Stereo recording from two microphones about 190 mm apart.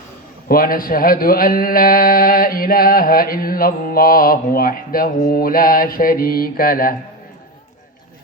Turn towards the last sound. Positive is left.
turn(degrees=50)  # may be behind; listen again after turning